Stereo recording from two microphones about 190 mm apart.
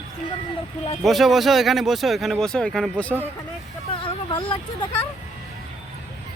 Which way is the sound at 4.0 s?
25° left (ahead or behind).